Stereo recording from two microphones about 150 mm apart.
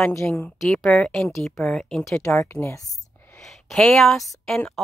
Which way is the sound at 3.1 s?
15° left (ahead or behind).